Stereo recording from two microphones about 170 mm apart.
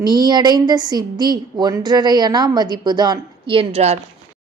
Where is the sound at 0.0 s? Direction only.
25° right (ahead or behind).